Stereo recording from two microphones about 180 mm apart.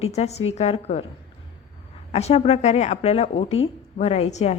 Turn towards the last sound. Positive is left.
turn(degrees=35)  # may be behind; listen again after turning